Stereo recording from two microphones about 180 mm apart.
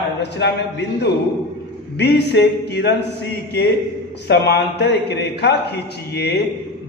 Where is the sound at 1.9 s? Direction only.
70° left (ahead or behind).